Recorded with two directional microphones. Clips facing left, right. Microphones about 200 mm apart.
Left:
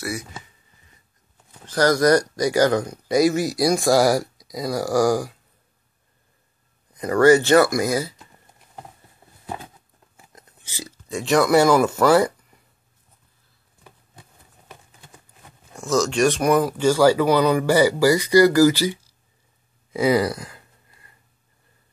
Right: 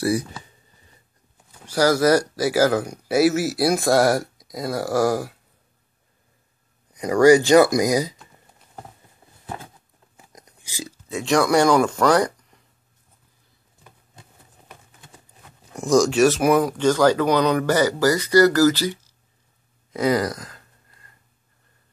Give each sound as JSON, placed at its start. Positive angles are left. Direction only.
{"t": 0.0, "sound": "speech", "side_deg": -30}
{"t": 1.7, "sound": "speech", "side_deg": -10}
{"t": 6.9, "sound": "speech", "side_deg": -15}
{"t": 10.1, "sound": "a sound", "side_deg": -15}
{"t": 11.1, "sound": "speech", "side_deg": 0}
{"t": 15.7, "sound": "speech", "side_deg": -15}
{"t": 19.9, "sound": "a sound", "side_deg": 5}